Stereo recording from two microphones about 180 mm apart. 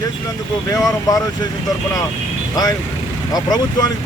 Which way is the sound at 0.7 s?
20° left (ahead or behind).